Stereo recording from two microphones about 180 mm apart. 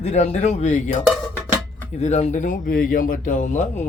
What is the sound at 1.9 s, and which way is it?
Speech, 40° left (ahead or behind).